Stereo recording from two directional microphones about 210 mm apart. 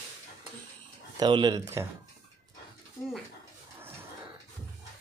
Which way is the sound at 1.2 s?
20° right (ahead or behind).